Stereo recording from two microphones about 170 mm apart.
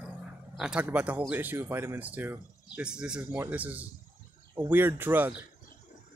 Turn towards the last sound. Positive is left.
turn(degrees=-10)  # may be behind; listen again after turning